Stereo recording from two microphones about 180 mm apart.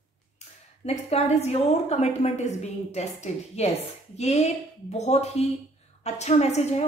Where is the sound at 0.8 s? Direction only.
35° left (ahead or behind).